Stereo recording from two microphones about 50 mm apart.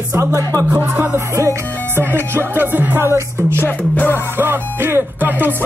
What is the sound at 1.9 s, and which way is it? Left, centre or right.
Music, right.